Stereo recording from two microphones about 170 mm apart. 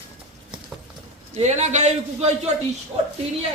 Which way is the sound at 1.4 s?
40° right (ahead or behind).